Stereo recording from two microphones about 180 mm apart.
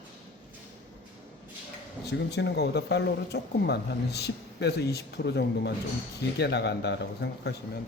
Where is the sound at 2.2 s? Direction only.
70° left (ahead or behind).